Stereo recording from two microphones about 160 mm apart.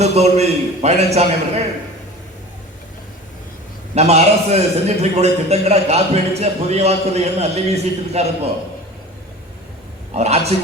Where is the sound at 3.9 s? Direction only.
40° right (ahead or behind).